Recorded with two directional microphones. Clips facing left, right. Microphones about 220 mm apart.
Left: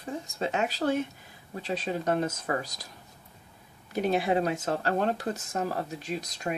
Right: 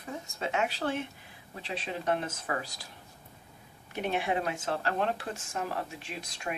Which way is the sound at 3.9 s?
40° left (ahead or behind).